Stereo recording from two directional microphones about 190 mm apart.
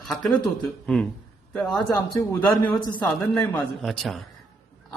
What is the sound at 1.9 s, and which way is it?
Speech, 20° left (ahead or behind).